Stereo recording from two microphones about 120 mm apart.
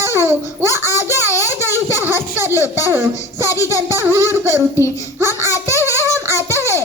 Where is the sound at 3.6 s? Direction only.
20° right (ahead or behind).